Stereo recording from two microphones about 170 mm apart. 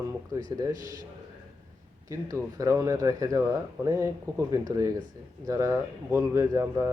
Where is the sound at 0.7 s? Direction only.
50° right (ahead or behind).